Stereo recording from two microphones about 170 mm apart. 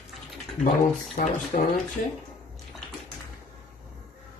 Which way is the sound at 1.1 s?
40° left (ahead or behind).